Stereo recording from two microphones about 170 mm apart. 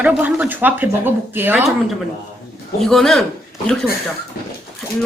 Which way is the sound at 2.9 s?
Centre (ahead or behind).